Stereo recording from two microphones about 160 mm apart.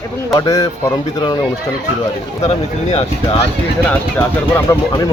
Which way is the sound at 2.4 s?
40° left (ahead or behind).